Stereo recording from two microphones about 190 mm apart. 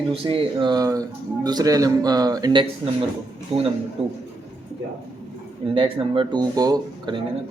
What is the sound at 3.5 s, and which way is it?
Speech, 30° right (ahead or behind).